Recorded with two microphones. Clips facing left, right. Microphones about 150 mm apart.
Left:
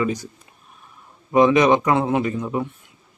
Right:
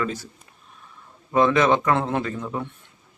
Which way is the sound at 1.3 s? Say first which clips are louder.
Left 4 dB; 15° left (ahead or behind).